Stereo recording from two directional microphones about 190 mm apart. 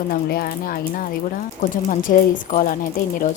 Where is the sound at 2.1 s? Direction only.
45° left (ahead or behind).